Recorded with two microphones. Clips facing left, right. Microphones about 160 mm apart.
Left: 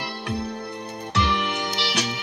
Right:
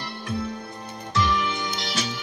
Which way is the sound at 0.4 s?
65° left (ahead or behind).